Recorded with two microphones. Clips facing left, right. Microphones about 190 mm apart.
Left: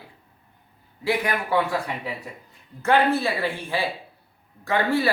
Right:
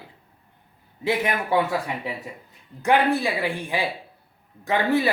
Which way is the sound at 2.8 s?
15° right (ahead or behind).